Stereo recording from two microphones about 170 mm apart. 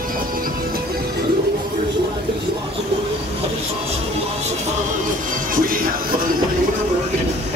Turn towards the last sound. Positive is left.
turn(degrees=-55)  # may be behind; listen again after turning